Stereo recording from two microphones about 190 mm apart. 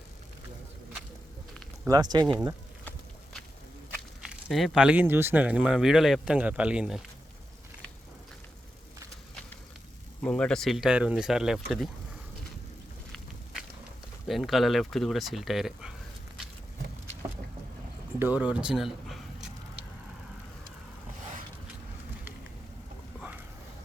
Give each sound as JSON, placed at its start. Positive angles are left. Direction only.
{"t": 1.9, "sound": "speech", "side_deg": -20}
{"t": 3.9, "sound": "speech", "side_deg": 0}
{"t": 10.2, "sound": "speech", "side_deg": 5}
{"t": 14.3, "sound": "speech", "side_deg": 0}
{"t": 18.2, "sound": "speech", "side_deg": -10}